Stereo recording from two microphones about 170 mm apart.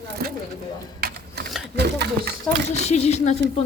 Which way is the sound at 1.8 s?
80° right.